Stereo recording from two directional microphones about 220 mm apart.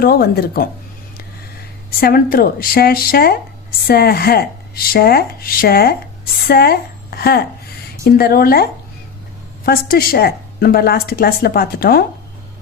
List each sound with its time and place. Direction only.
0.0 s a woman's voice: 45° left (ahead or behind)
2.0 s a woman's voice: 45° left (ahead or behind)
9.6 s a woman's voice: 45° left (ahead or behind)